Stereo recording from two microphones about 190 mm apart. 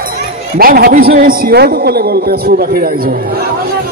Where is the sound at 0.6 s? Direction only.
50° right (ahead or behind).